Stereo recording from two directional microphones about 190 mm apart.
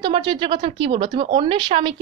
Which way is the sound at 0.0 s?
25° right (ahead or behind).